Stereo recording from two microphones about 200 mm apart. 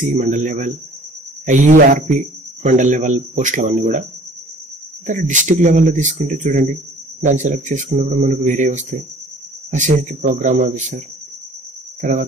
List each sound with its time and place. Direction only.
0.0 s speech: 35° right (ahead or behind)
5.0 s speech: 35° right (ahead or behind)
12.0 s speech: 40° right (ahead or behind)